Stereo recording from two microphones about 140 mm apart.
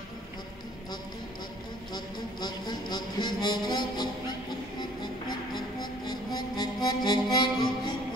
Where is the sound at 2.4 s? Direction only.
30° left (ahead or behind).